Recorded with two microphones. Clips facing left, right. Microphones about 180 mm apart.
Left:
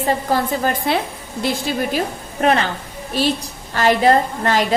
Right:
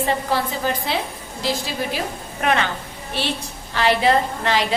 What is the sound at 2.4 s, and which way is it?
Speech, 35° left (ahead or behind).